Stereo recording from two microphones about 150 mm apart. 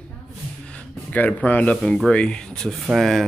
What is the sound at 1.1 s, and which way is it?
Speech, 10° left (ahead or behind).